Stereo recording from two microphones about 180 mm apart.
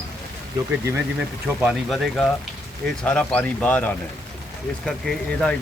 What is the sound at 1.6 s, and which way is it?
Speech, centre (ahead or behind).